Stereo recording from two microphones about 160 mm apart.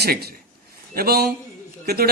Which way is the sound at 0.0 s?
80° right.